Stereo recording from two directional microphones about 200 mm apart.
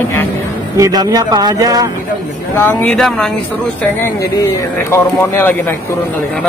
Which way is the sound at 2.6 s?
10° left (ahead or behind).